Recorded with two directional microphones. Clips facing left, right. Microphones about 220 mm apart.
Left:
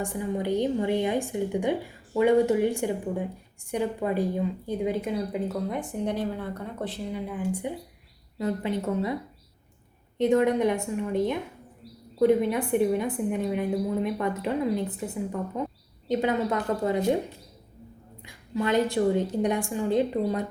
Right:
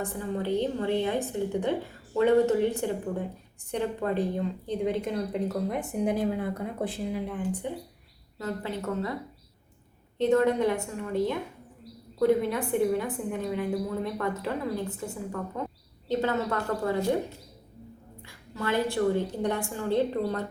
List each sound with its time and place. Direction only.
0.0 s a woman's voice: 15° left (ahead or behind)
10.2 s a woman's voice: 15° left (ahead or behind)
18.2 s a sound: 15° left (ahead or behind)
18.9 s a woman's voice: 15° left (ahead or behind)